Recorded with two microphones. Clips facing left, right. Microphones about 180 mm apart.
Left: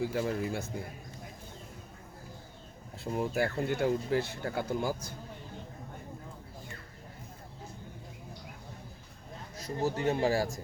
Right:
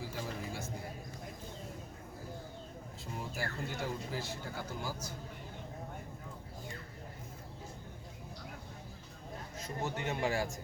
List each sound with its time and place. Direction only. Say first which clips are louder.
0.1 s speech: left 9 dB; 65° left (ahead or behind)
3.0 s speech: left 11 dB; 60° left (ahead or behind)
9.6 s a man's voice: left 7 dB; 35° left (ahead or behind)